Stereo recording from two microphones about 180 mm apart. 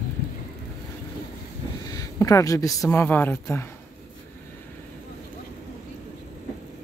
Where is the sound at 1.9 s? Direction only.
20° left (ahead or behind).